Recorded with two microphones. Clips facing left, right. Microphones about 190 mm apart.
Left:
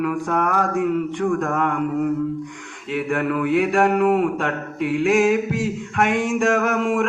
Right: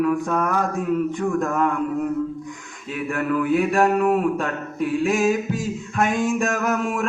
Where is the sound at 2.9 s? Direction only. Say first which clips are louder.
Left 1 dB; 70° left (ahead or behind).